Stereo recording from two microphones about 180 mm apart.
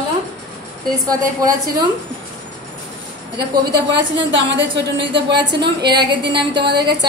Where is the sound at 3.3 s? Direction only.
65° right (ahead or behind).